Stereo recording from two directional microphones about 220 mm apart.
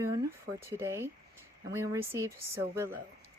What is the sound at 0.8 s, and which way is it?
A woman's voice, 10° right (ahead or behind).